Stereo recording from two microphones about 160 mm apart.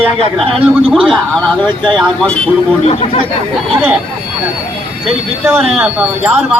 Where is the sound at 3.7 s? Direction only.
10° right (ahead or behind).